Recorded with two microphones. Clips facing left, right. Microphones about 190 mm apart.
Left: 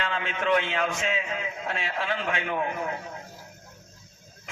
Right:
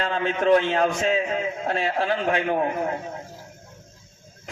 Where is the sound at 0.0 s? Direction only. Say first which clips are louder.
Right 6 dB; 40° right (ahead or behind).